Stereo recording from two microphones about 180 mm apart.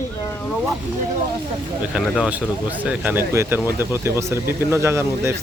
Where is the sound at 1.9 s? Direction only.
5° right (ahead or behind).